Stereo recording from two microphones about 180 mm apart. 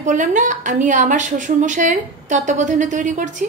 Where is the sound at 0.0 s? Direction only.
45° right (ahead or behind).